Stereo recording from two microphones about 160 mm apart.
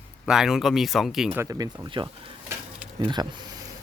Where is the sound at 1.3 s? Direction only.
20° right (ahead or behind).